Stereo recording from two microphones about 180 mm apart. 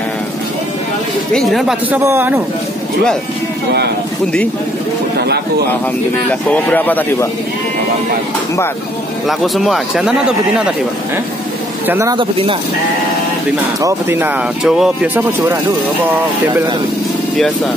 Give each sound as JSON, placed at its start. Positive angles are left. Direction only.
{"t": 1.3, "sound": "speech", "side_deg": 0}
{"t": 6.5, "sound": "speech", "side_deg": 10}
{"t": 9.3, "sound": "speech", "side_deg": 0}
{"t": 11.9, "sound": "speech", "side_deg": -15}
{"t": 12.2, "sound": "speech", "side_deg": -30}
{"t": 13.7, "sound": "speech", "side_deg": -15}